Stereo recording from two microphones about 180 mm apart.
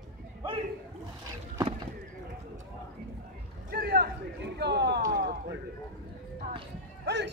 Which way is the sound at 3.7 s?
60° right (ahead or behind).